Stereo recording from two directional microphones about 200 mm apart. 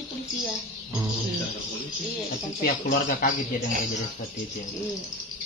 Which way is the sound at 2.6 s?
45° left (ahead or behind).